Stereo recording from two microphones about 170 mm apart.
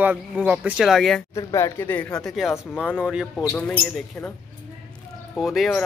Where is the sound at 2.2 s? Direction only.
Centre (ahead or behind).